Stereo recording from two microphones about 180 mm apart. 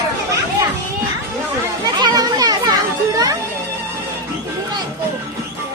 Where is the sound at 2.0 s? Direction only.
20° right (ahead or behind).